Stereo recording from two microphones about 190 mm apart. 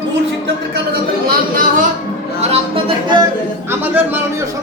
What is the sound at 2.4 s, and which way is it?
Speech, 30° right (ahead or behind).